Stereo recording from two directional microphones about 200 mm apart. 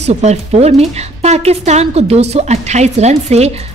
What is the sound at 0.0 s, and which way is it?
A woman's voice, 35° right (ahead or behind).